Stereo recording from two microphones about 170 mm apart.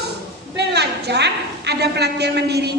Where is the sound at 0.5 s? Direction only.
75° right (ahead or behind).